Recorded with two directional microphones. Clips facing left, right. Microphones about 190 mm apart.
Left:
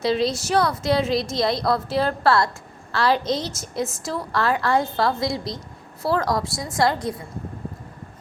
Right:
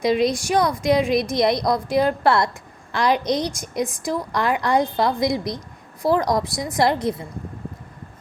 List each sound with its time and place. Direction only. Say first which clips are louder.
0.0 s a woman's voice: right 2 dB; 15° right (ahead or behind)